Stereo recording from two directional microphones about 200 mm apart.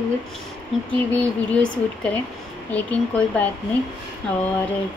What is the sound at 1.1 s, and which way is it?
Speech, 5° left (ahead or behind).